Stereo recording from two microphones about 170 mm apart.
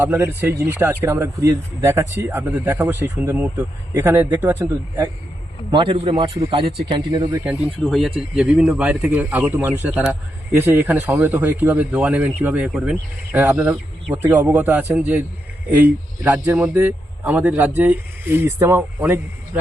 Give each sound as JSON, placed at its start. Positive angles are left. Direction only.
{"t": 0.0, "sound": "a man's voice", "side_deg": -15}
{"t": 5.7, "sound": "a man's voice", "side_deg": -30}
{"t": 7.4, "sound": "a man's voice", "side_deg": -5}